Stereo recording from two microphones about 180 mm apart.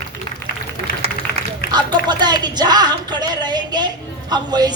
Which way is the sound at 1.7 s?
25° right (ahead or behind).